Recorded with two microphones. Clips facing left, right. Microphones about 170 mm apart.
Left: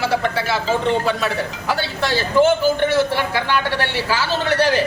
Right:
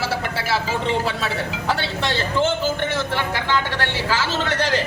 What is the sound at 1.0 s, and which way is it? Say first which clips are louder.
Speech: left 4 dB; 25° right (ahead or behind).